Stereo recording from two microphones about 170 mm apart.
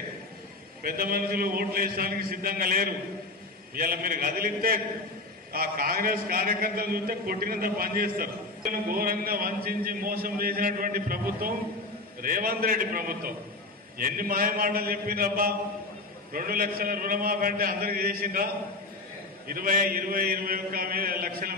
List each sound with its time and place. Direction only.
0.8 s a man's voice: 60° right (ahead or behind)